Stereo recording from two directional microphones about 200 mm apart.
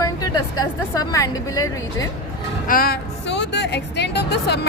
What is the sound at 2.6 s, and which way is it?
A woman's voice, 45° left (ahead or behind).